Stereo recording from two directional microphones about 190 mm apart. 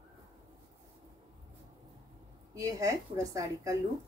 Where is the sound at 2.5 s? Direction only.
15° right (ahead or behind).